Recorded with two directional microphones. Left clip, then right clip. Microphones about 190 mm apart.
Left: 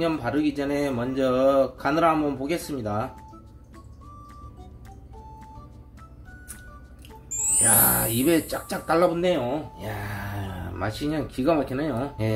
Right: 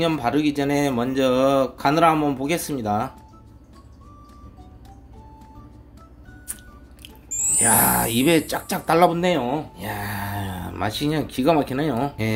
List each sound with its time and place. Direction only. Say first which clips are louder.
0.0 s speech: right 4 dB; 50° right (ahead or behind)
7.2 s a sound: right 3 dB; centre (ahead or behind)
8.0 s speech: right 4 dB; 50° right (ahead or behind)